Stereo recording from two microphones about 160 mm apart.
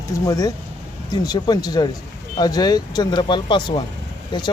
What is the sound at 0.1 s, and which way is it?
Speech, 20° left (ahead or behind).